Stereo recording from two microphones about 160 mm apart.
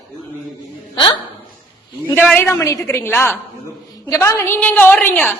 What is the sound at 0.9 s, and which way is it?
Hiccup, 30° left (ahead or behind).